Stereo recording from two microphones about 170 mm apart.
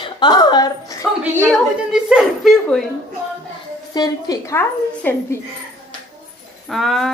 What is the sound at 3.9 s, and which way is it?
Speech, 20° left (ahead or behind).